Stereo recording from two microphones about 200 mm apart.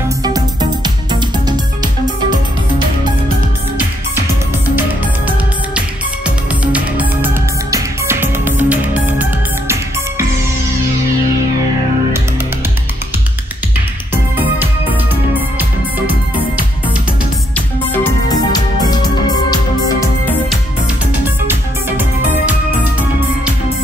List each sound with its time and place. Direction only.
0.2 s music: 20° right (ahead or behind)
5.8 s music: 5° right (ahead or behind)
14.1 s music: 10° right (ahead or behind)
17.6 s music: 10° left (ahead or behind)
21.1 s music: 10° right (ahead or behind)